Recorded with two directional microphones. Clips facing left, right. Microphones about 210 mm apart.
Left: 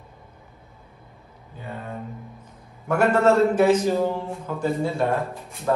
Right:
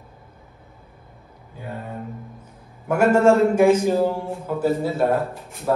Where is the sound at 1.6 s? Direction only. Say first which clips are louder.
Right 2 dB; 10° right (ahead or behind).